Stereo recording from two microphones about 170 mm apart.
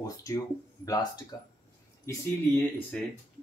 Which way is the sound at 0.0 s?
20° left (ahead or behind).